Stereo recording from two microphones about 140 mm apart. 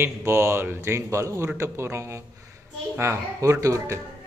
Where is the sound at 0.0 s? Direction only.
20° right (ahead or behind).